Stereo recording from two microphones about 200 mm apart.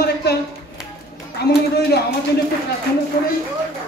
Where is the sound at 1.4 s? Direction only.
55° left (ahead or behind).